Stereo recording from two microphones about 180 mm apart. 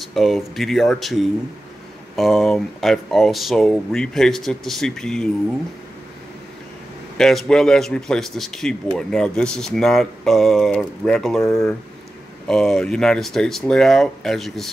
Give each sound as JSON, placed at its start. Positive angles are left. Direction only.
{"t": 0.0, "sound": "speech", "side_deg": 0}
{"t": 7.2, "sound": "speech", "side_deg": 0}
{"t": 11.4, "sound": "speech", "side_deg": 15}
{"t": 12.4, "sound": "speech", "side_deg": 0}